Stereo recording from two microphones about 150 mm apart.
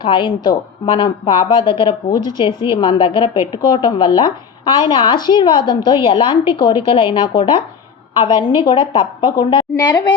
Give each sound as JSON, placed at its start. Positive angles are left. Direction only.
{"t": 0.0, "sound": "a woman's voice", "side_deg": 35}